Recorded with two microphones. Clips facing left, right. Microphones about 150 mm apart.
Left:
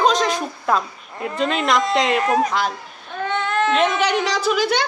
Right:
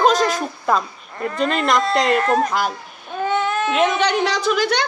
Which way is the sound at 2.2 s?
10° left (ahead or behind).